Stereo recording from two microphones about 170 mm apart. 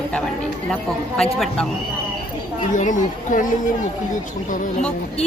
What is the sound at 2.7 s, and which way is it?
Speech, 50° left (ahead or behind).